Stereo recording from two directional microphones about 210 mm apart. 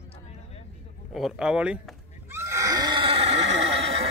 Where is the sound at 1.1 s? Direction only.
Centre (ahead or behind); by 4.1 s 30° right (ahead or behind).